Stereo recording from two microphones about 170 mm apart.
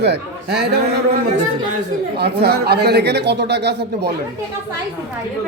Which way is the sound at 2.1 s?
70° right (ahead or behind).